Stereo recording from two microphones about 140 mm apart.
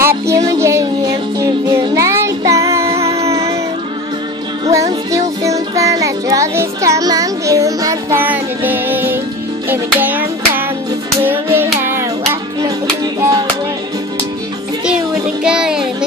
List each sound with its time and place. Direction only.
0.3 s music: 20° right (ahead or behind)
3.1 s music: 45° right (ahead or behind)
4.6 s music: 25° right (ahead or behind)
15.4 s music: 5° right (ahead or behind)